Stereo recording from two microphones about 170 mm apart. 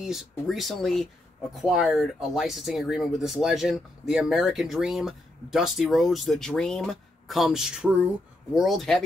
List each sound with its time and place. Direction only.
0.0 s speech: centre (ahead or behind)